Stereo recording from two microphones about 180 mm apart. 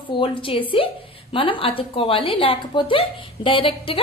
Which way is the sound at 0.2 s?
30° left (ahead or behind).